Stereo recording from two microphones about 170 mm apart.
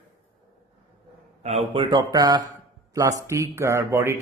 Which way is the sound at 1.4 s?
40° right (ahead or behind).